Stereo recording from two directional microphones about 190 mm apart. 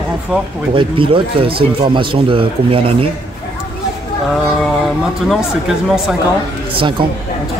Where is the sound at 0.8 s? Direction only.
25° right (ahead or behind).